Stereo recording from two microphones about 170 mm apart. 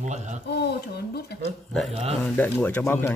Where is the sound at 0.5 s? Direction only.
75° left (ahead or behind).